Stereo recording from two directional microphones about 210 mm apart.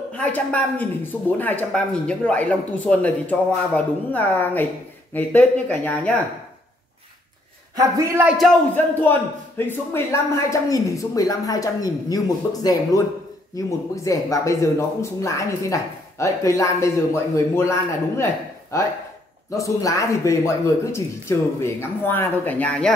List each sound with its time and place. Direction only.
0.1 s speech: 5° left (ahead or behind)
7.7 s a man's voice: 15° right (ahead or behind)
8.7 s speech: 10° left (ahead or behind)